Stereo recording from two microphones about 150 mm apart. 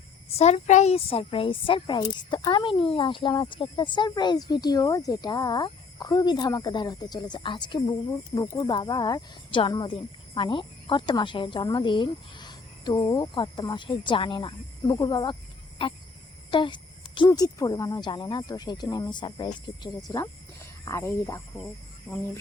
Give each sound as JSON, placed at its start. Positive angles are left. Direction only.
{"t": 0.3, "sound": "speech", "side_deg": 45}
{"t": 22.1, "sound": "speech", "side_deg": 5}